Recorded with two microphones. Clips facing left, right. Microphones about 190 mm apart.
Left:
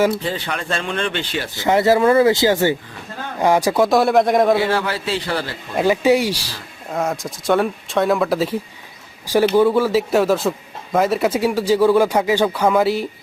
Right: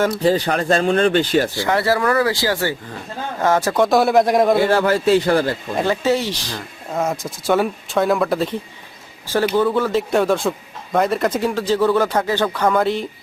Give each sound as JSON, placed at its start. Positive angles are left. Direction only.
{"t": 0.1, "sound": "speech", "side_deg": -40}
{"t": 1.5, "sound": "speech", "side_deg": 20}
{"t": 3.8, "sound": "speech", "side_deg": 0}
{"t": 4.6, "sound": "a man's voice", "side_deg": -45}
{"t": 5.7, "sound": "speech", "side_deg": 10}
{"t": 6.9, "sound": "speech", "side_deg": 0}
{"t": 9.2, "sound": "speech", "side_deg": 15}